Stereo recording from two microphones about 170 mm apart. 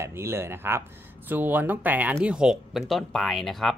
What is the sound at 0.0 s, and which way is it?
Speech, 15° right (ahead or behind).